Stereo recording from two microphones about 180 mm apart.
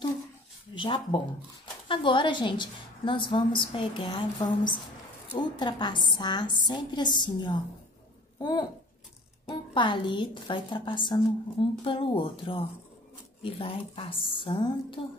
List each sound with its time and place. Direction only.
0.7 s a woman's voice: 25° left (ahead or behind)